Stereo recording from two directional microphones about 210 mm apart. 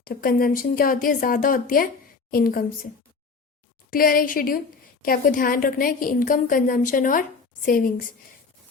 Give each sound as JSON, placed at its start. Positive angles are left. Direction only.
{"t": 0.0, "sound": "a woman's voice", "side_deg": 45}
{"t": 3.8, "sound": "a woman's voice", "side_deg": 45}